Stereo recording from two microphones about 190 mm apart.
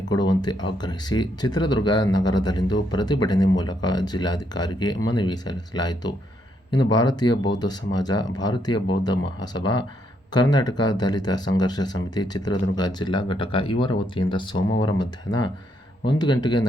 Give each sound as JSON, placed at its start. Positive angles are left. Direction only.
{"t": 0.6, "sound": "speech", "side_deg": 20}